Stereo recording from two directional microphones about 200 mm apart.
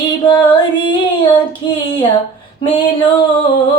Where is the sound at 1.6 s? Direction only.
25° left (ahead or behind).